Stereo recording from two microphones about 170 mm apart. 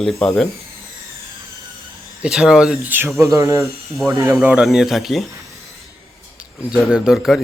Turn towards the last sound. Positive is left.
turn(degrees=0)  # may be behind; listen again after turning